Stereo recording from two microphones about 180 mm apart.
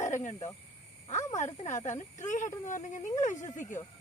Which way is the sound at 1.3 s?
40° left (ahead or behind).